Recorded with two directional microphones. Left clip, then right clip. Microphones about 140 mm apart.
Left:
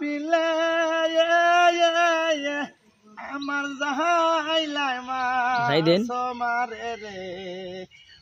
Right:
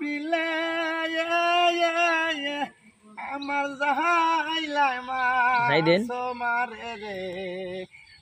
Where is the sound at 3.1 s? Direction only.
35° left (ahead or behind).